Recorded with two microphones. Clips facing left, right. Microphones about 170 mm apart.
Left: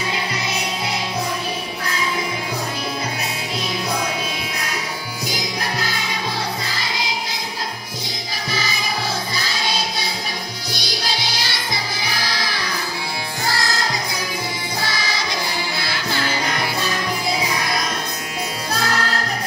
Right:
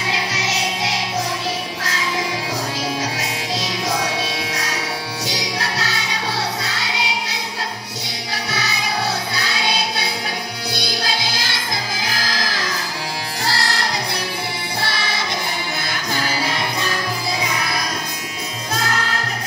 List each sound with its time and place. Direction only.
0.1 s music: 90° right
5.2 s music: 80° right
8.5 s music: 70° right (ahead or behind)
12.0 s music: 90° right
13.5 s music: 70° right (ahead or behind)
15.9 s music: 15° right (ahead or behind)